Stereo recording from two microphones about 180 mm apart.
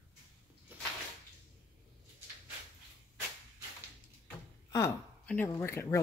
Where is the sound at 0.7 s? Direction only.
10° right (ahead or behind).